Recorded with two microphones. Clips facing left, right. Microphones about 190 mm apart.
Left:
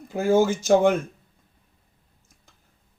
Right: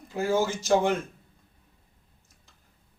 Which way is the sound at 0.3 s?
50° left (ahead or behind).